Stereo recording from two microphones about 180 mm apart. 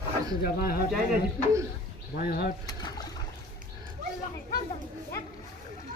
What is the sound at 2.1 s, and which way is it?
Speech, 60° left (ahead or behind).